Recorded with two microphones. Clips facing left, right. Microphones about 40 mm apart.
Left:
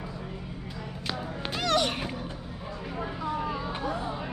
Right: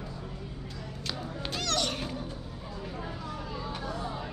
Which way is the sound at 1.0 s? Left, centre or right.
Centre.